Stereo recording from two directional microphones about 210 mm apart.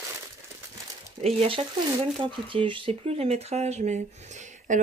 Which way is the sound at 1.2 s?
30° right (ahead or behind).